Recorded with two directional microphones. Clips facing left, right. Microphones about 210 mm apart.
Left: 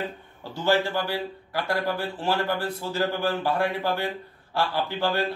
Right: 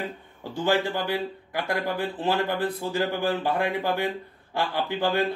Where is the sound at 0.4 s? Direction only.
15° right (ahead or behind).